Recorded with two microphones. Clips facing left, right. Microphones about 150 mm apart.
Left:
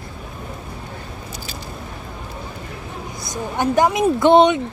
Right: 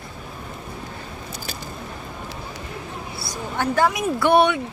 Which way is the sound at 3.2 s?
15° left (ahead or behind).